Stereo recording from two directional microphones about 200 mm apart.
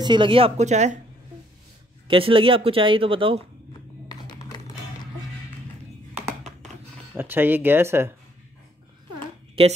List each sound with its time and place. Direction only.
0.0 s speech: 25° right (ahead or behind)
2.0 s speech: 25° right (ahead or behind)
4.1 s computer keyboard: 20° left (ahead or behind)
7.2 s speech: 10° right (ahead or behind)
9.6 s speech: 30° right (ahead or behind)